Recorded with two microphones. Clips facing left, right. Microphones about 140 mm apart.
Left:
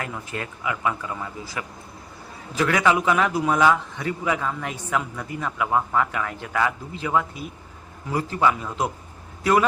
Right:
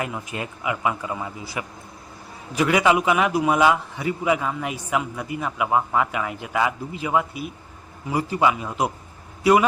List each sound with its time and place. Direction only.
0.0 s a man's voice: 15° right (ahead or behind)